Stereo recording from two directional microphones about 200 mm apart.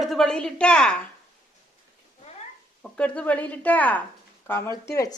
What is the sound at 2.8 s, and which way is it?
Speech, 5° left (ahead or behind).